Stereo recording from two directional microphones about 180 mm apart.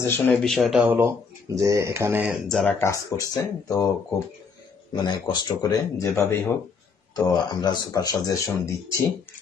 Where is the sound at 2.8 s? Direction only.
15° left (ahead or behind).